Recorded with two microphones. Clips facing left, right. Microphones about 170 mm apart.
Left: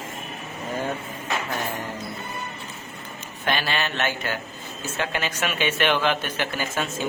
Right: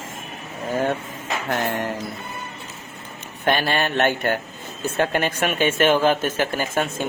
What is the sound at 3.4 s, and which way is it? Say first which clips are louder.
Speech: right 5 dB; 50° right (ahead or behind).